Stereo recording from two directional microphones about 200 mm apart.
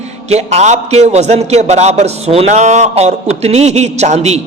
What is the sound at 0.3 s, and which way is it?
A man's voice, 35° right (ahead or behind).